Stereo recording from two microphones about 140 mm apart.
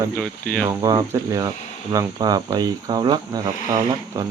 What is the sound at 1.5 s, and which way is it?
Speech, 55° left (ahead or behind).